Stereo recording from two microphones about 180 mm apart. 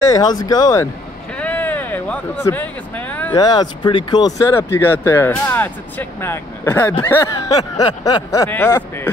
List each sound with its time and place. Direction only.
0.1 s speech: 20° left (ahead or behind)
1.4 s a sound: 10° left (ahead or behind)
3.3 s speech: 25° left (ahead or behind)